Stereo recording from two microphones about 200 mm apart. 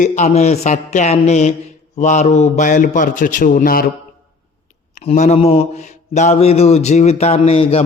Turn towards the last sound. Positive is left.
turn(degrees=30)  # may be behind; listen again after turning